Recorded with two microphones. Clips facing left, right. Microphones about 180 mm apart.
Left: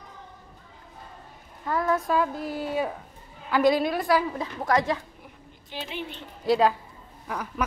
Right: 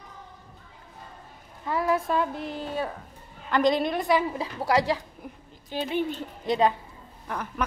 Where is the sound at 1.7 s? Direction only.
10° right (ahead or behind).